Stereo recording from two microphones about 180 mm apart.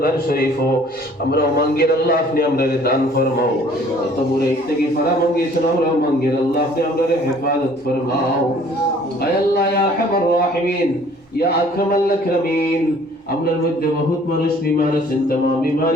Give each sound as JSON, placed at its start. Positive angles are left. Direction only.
{"t": 0.0, "sound": "a man's voice", "side_deg": 55}